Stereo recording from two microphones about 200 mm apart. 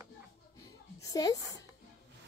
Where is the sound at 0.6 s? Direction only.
15° left (ahead or behind).